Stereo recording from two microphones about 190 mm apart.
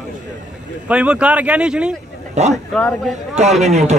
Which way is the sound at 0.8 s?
5° right (ahead or behind).